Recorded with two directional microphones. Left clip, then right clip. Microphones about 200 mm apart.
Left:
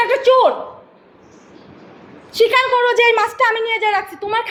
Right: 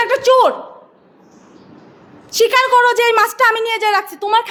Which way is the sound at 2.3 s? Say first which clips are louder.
Right 2 dB; 30° right (ahead or behind).